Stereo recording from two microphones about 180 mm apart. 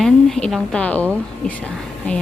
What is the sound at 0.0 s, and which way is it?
A woman's voice, centre (ahead or behind).